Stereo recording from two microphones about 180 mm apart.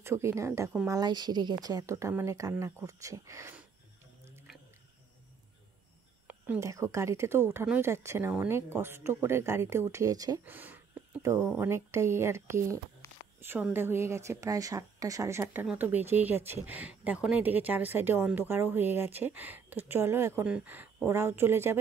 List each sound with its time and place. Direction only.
0.0 s a woman's voice: 15° right (ahead or behind)
6.2 s a woman's voice: 10° right (ahead or behind)
10.5 s a woman's voice: 10° right (ahead or behind)